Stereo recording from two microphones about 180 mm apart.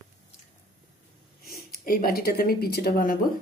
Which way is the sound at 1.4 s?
50° left (ahead or behind).